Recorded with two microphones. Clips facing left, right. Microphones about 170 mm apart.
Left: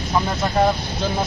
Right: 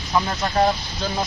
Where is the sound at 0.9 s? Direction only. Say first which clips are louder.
Left 3 dB; 20° left (ahead or behind).